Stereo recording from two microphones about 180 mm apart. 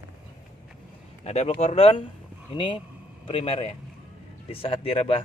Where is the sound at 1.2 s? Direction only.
35° left (ahead or behind).